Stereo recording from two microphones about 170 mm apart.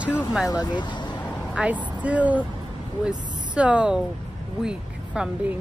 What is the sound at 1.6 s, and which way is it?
Speech, 5° right (ahead or behind).